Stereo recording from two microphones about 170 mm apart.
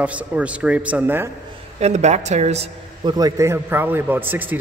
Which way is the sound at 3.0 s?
25° right (ahead or behind).